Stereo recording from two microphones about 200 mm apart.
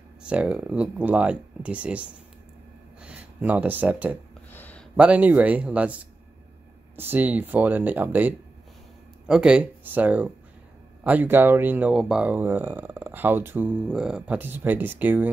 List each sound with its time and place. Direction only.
0.2 s speech: 5° right (ahead or behind)
4.5 s a sound: 10° left (ahead or behind)
4.9 s speech: 5° right (ahead or behind)
7.0 s speech: 10° right (ahead or behind)